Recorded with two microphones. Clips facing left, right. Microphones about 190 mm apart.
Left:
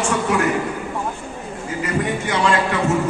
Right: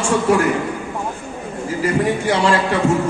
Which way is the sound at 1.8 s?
30° right (ahead or behind).